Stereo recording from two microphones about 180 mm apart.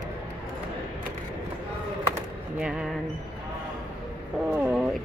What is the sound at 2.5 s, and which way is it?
Speech, 5° right (ahead or behind).